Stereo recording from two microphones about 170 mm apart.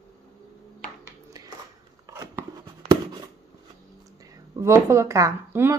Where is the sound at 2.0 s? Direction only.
15° right (ahead or behind).